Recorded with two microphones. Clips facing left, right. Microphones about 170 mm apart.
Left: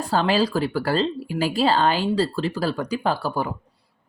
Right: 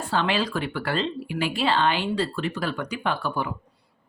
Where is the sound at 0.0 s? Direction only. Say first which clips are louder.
Left 4 dB; 40° left (ahead or behind).